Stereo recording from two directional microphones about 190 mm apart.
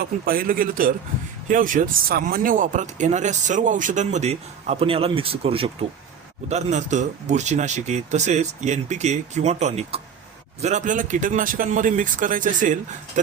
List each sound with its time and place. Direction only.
0.0 s speech: 50° right (ahead or behind)